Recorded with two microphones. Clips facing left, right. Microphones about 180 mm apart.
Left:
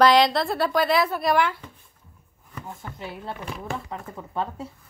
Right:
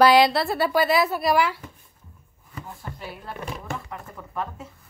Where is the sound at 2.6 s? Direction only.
20° left (ahead or behind).